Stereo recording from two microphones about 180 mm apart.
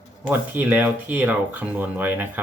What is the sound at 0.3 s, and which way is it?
Speech, 10° right (ahead or behind).